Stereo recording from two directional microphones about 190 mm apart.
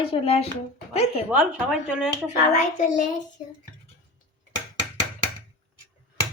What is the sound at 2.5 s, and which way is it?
Speech, 40° left (ahead or behind).